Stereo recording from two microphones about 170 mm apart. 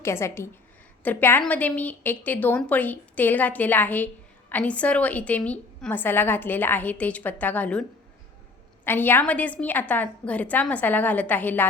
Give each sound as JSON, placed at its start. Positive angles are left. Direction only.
{"t": 0.0, "sound": "a woman's voice", "side_deg": 15}